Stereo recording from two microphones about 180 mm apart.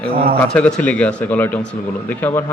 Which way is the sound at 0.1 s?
55° right (ahead or behind).